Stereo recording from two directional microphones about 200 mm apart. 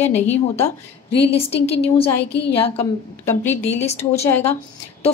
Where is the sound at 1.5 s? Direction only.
30° left (ahead or behind).